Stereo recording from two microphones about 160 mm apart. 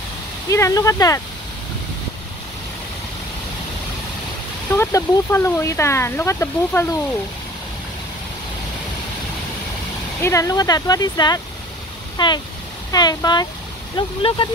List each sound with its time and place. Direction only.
0.5 s speech: 20° left (ahead or behind)
4.7 s speech: 15° left (ahead or behind)
10.2 s speech: 20° left (ahead or behind)